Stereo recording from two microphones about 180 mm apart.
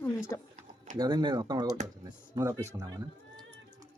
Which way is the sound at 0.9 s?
25° right (ahead or behind).